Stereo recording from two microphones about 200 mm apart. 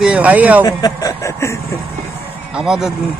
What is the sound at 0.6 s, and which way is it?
Speech, 20° left (ahead or behind).